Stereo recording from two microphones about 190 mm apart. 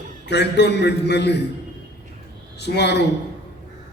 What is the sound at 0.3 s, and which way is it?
A man's voice, 65° left (ahead or behind).